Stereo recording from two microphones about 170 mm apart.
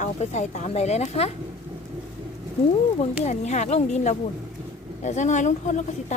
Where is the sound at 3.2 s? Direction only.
40° left (ahead or behind).